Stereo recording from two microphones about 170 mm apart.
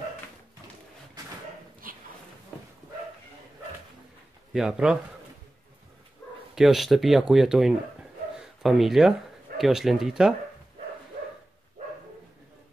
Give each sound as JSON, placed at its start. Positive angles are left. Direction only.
{"t": 1.8, "sound": "a sound", "side_deg": -55}
{"t": 4.5, "sound": "speech", "side_deg": -5}
{"t": 6.5, "sound": "a man's voice", "side_deg": 0}